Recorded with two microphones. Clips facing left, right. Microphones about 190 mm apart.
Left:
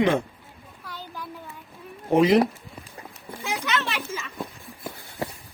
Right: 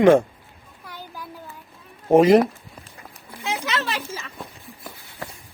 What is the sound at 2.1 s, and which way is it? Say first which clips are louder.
Speech: right 4 dB; 45° right (ahead or behind).